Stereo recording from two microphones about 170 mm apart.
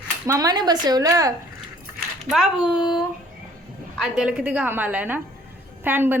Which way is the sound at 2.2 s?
5° right (ahead or behind).